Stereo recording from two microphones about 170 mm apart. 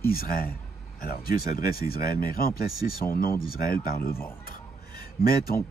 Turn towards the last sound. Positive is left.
turn(degrees=60)  # may be behind; listen again after turning